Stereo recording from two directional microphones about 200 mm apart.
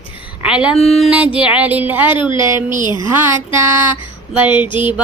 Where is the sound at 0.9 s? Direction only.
5° right (ahead or behind).